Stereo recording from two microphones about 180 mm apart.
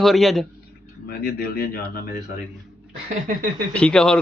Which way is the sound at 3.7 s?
5° left (ahead or behind).